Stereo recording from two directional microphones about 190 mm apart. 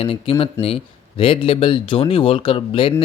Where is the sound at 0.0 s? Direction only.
30° left (ahead or behind).